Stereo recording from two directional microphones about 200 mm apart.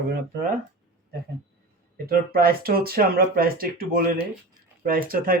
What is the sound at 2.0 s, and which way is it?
Speech, 50° right (ahead or behind).